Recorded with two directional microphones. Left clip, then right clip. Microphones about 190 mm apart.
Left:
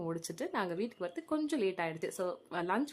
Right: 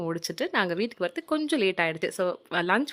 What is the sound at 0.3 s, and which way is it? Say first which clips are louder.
Speech: right 12 dB; 25° right (ahead or behind).